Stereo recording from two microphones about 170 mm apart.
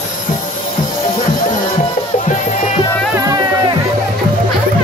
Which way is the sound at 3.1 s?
20° right (ahead or behind).